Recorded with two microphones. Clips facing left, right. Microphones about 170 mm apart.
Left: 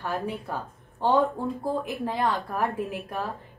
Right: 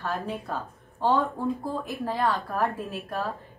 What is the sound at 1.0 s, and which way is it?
A woman's voice, 20° left (ahead or behind).